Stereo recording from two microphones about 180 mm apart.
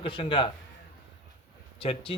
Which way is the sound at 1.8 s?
30° left (ahead or behind).